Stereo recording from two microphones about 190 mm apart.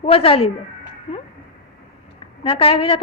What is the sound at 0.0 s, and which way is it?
A woman's voice, 30° left (ahead or behind).